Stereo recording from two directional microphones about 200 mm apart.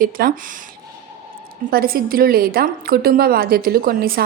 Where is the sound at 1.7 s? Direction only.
45° right (ahead or behind).